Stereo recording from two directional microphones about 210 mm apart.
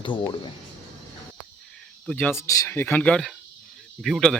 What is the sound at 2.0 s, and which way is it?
Speech, 5° left (ahead or behind).